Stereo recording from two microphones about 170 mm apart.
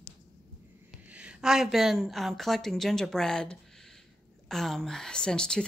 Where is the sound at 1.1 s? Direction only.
5° right (ahead or behind).